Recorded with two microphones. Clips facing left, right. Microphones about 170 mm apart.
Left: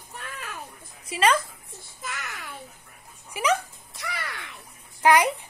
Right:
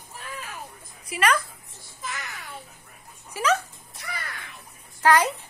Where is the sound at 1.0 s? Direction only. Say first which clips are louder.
Left 2 dB; 25° left (ahead or behind).